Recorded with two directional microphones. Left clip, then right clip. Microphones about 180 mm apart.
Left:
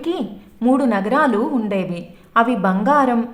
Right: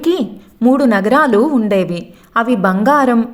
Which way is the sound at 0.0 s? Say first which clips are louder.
Right 8 dB; 35° right (ahead or behind).